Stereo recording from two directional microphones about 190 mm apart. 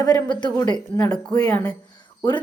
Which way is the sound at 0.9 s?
5° left (ahead or behind).